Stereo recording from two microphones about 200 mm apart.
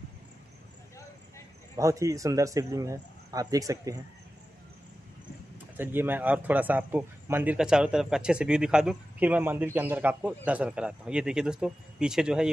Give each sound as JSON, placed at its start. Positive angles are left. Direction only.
{"t": 1.8, "sound": "a man's voice", "side_deg": -15}
{"t": 5.8, "sound": "speech", "side_deg": -10}